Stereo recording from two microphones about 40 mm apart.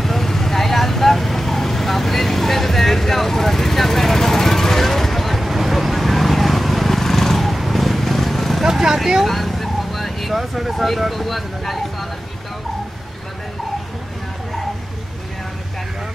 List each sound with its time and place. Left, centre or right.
0.0 s vehicle: centre